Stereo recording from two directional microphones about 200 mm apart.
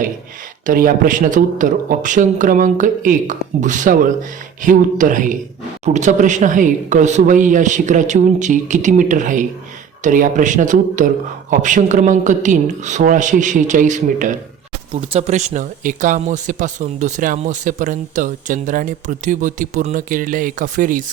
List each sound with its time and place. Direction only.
0.6 s speech: 45° right (ahead or behind)